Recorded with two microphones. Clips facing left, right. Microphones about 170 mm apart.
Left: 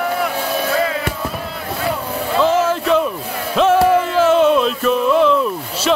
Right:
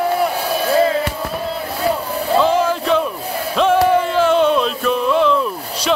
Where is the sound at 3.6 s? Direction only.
Centre (ahead or behind).